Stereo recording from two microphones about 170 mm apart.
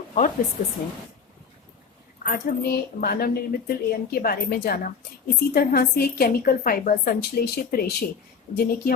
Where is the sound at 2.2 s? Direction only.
65° left (ahead or behind).